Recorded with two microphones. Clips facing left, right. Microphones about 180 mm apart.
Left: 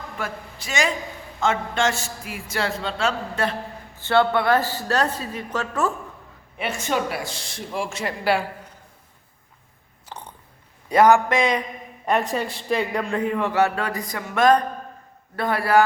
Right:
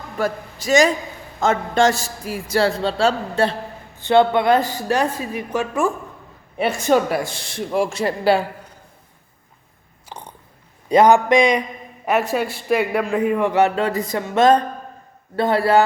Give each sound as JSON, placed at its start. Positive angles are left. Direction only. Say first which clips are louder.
{"t": 0.2, "sound": "a man's voice", "louder": "right 10 dB", "side_deg": -40}
{"t": 3.9, "sound": "a man's voice", "louder": "right 4 dB", "side_deg": -20}
{"t": 6.6, "sound": "speech", "louder": "right 8 dB", "side_deg": -35}
{"t": 7.8, "sound": "a man's voice", "louder": "right 7 dB", "side_deg": -35}
{"t": 10.1, "sound": "biting", "louder": "right 2 dB", "side_deg": -10}
{"t": 10.8, "sound": "a man's voice", "louder": "right 3 dB", "side_deg": -20}
{"t": 12.0, "sound": "a man's voice", "louder": "right 3 dB", "side_deg": -5}